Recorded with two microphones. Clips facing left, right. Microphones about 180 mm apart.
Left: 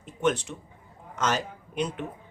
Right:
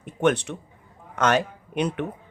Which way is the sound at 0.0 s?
65° right (ahead or behind).